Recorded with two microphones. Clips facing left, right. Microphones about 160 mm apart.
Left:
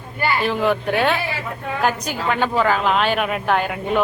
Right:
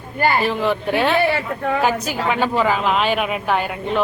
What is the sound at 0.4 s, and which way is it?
A woman's voice, centre (ahead or behind).